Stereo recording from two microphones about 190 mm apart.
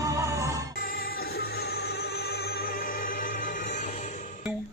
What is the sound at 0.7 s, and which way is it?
Music, 50° left (ahead or behind).